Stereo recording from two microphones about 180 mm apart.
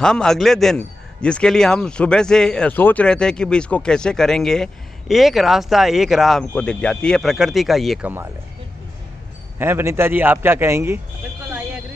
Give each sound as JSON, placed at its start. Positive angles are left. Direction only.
{"t": 0.0, "sound": "a man's voice", "side_deg": 5}
{"t": 9.6, "sound": "a man's voice", "side_deg": -15}